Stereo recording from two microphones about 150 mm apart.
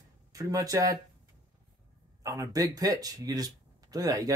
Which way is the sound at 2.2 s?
20° right (ahead or behind).